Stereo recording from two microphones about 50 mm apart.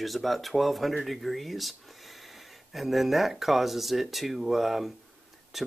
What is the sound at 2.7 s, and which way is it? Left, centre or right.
Speech, centre.